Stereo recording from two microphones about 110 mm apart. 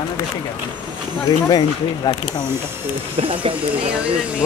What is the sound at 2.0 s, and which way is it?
Speech, 40° left (ahead or behind).